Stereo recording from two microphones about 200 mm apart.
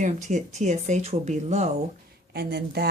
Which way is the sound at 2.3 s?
55° right (ahead or behind).